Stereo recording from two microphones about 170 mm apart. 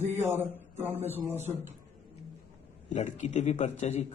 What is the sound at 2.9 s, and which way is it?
A man's voice, 45° left (ahead or behind).